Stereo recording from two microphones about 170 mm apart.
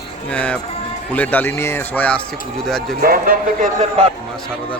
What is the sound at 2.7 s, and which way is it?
Mantra, centre (ahead or behind).